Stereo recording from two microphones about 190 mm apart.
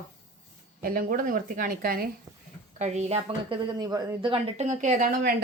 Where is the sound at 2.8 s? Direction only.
35° right (ahead or behind).